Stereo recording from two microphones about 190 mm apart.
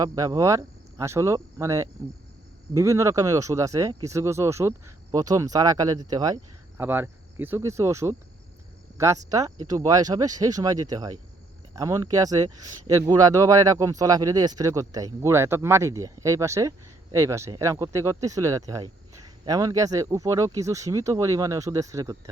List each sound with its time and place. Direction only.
0.0 s speech: 20° right (ahead or behind)